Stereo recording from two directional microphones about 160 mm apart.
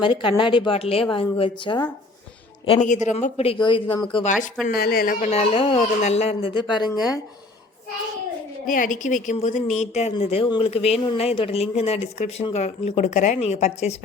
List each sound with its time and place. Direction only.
0.0 s speech: 30° left (ahead or behind)
2.8 s speech: 50° left (ahead or behind); by 4.0 s 30° left (ahead or behind)
4.6 s speech: 70° left (ahead or behind)
5.2 s speech: 40° left (ahead or behind)
8.6 s a woman's voice: 55° left (ahead or behind)